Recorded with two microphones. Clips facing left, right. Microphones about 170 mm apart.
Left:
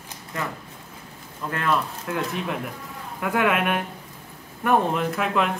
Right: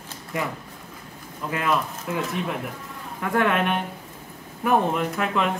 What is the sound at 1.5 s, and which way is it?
Speech, 10° right (ahead or behind).